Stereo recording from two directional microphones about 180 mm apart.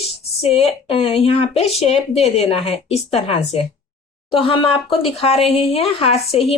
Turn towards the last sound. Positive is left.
turn(degrees=35)  # may be behind; listen again after turning